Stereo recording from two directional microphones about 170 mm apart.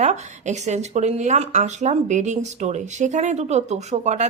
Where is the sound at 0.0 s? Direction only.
45° right (ahead or behind).